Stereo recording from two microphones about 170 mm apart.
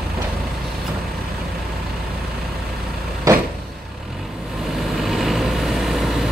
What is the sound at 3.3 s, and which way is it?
Vehicle, 20° right (ahead or behind).